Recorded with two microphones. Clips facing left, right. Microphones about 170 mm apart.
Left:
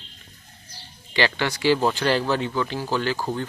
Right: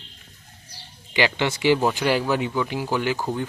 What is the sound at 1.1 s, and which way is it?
Speech, 15° right (ahead or behind).